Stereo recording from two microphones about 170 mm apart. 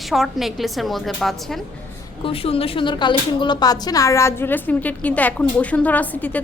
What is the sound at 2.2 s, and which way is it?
A woman's voice, 35° left (ahead or behind).